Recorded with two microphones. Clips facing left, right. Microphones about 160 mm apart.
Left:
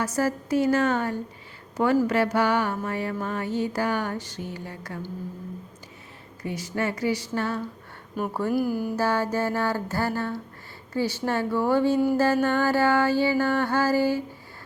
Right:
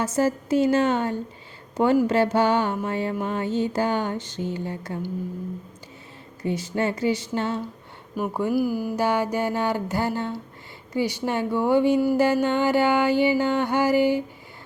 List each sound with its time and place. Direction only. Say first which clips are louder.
0.0 s music: right 3 dB; 25° right (ahead or behind)
1.7 s speech: right 2 dB; 25° right (ahead or behind)
2.0 s music: right 2 dB; 25° right (ahead or behind)
6.4 s music: right 3 dB; 25° right (ahead or behind)
8.3 s speech: right 2 dB; 15° right (ahead or behind)
8.5 s speech: right 1 dB; 5° right (ahead or behind)